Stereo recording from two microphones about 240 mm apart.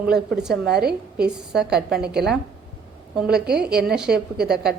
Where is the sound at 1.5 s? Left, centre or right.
Centre.